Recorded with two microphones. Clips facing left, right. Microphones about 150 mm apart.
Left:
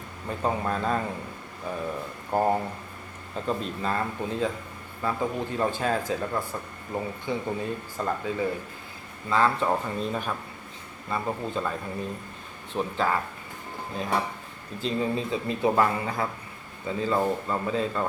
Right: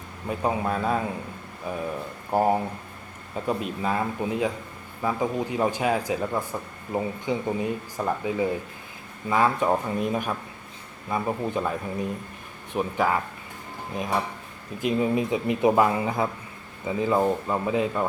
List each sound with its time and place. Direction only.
0.3 s speech: 10° right (ahead or behind)
12.7 s speech: 15° right (ahead or behind)